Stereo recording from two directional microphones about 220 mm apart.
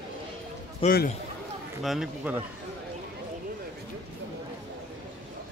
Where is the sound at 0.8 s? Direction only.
40° left (ahead or behind).